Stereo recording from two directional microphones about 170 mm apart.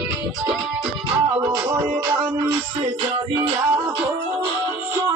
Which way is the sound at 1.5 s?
25° right (ahead or behind).